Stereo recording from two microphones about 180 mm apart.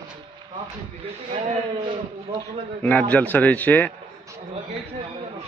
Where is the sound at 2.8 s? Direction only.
10° left (ahead or behind).